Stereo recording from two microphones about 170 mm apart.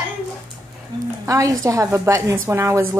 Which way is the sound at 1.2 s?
20° right (ahead or behind).